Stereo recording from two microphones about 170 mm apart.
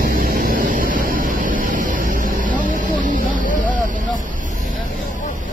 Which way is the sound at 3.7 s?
50° right (ahead or behind).